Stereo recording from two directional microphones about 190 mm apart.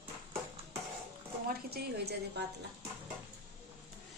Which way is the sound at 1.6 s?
55° right (ahead or behind).